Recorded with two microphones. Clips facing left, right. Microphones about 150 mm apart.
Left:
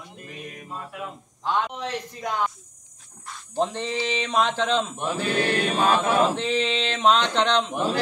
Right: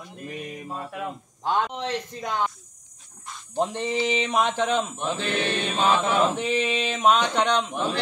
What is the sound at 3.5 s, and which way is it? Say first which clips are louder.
Speech: right 1 dB; 15° right (ahead or behind).